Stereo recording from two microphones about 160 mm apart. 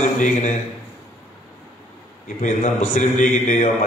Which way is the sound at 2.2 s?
50° left (ahead or behind).